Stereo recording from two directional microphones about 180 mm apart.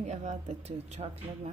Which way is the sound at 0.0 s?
40° right (ahead or behind).